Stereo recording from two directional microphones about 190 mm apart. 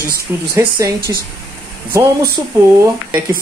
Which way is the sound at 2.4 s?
20° right (ahead or behind).